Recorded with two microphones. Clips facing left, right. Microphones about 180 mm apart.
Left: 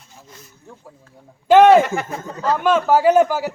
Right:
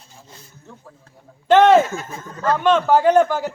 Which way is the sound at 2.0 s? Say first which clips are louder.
Left 6 dB; 65° left (ahead or behind).